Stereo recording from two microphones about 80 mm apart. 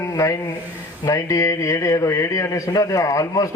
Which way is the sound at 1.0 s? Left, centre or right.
Left.